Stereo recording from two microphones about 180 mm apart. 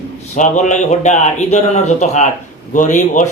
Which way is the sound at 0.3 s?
45° left (ahead or behind).